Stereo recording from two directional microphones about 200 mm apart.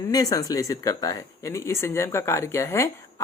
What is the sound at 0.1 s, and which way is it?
Speech, 15° left (ahead or behind).